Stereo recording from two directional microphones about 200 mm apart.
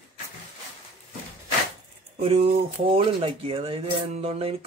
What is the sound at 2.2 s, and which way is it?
Speech, 30° right (ahead or behind).